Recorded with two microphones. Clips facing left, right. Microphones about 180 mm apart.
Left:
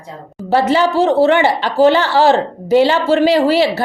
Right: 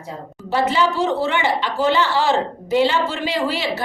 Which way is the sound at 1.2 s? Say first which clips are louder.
Left 8 dB; 65° left (ahead or behind).